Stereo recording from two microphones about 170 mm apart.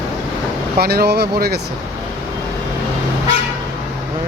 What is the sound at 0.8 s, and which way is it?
Speech, 65° right (ahead or behind).